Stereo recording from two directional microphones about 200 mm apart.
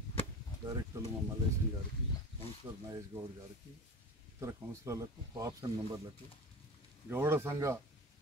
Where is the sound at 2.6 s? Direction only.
20° right (ahead or behind).